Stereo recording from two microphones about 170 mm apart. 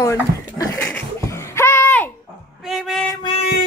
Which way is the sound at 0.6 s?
10° left (ahead or behind).